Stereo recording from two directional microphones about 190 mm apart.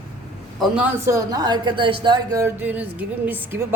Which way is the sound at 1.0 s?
20° right (ahead or behind).